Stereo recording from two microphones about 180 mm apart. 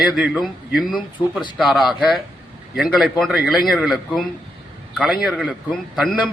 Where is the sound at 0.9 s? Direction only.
25° left (ahead or behind).